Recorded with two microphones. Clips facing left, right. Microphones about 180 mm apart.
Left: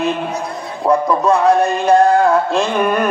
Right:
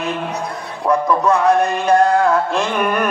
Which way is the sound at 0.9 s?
30° left (ahead or behind).